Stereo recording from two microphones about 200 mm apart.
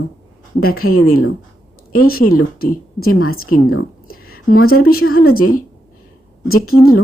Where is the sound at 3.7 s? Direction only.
90° left.